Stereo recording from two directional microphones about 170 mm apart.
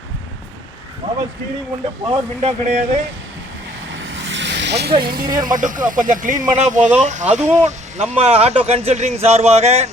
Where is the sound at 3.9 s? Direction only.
90° right.